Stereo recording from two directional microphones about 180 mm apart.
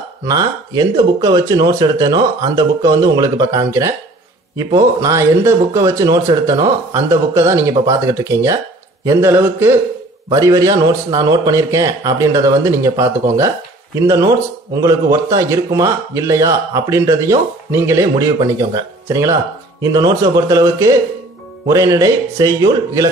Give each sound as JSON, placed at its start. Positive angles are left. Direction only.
{"t": 0.2, "sound": "a man's voice", "side_deg": -20}